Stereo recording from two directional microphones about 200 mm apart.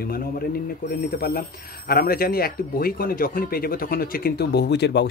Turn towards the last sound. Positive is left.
turn(degrees=55)  # may be behind; listen again after turning